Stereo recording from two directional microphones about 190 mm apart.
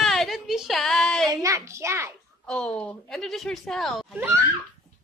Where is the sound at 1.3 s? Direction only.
15° right (ahead or behind).